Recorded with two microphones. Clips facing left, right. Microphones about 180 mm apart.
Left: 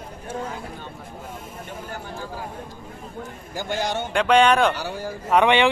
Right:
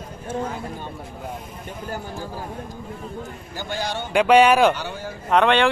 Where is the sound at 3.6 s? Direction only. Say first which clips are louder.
Left 2 dB; 20° left (ahead or behind).